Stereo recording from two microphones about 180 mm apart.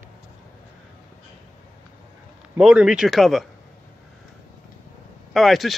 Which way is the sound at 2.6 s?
5° right (ahead or behind).